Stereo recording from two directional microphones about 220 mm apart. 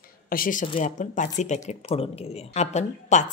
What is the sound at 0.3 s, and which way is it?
A woman's voice, 40° left (ahead or behind).